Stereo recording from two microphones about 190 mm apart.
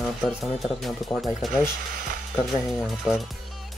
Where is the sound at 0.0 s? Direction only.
Centre (ahead or behind).